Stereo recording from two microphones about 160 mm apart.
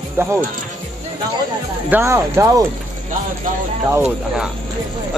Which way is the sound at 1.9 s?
15° right (ahead or behind).